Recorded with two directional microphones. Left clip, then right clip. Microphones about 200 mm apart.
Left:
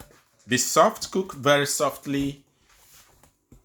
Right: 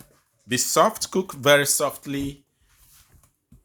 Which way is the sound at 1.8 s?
25° right (ahead or behind).